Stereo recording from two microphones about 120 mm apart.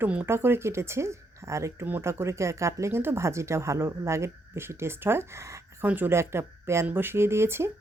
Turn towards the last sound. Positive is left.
turn(degrees=-20)  # may be behind; listen again after turning